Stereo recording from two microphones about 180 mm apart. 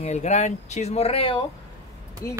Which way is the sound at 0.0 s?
40° left (ahead or behind).